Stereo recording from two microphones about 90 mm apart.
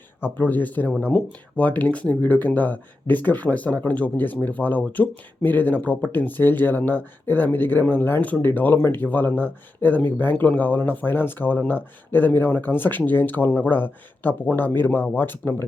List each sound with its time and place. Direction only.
0.2 s speech: 20° left (ahead or behind)